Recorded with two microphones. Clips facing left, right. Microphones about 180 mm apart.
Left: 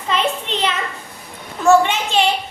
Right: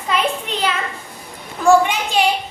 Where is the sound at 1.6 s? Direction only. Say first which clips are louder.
Even; 10° right (ahead or behind).